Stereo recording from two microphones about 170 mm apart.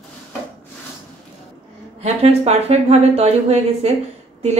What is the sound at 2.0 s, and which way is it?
A woman's voice, 35° right (ahead or behind).